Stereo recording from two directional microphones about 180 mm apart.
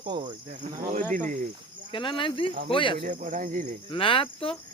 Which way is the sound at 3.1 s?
45° right (ahead or behind).